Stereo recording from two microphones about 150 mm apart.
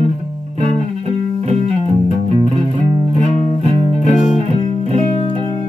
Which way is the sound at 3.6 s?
45° right (ahead or behind).